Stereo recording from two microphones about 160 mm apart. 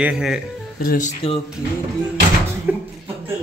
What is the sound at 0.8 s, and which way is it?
Speech, 60° left (ahead or behind).